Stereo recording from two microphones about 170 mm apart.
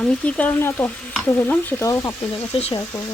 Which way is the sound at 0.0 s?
5° left (ahead or behind).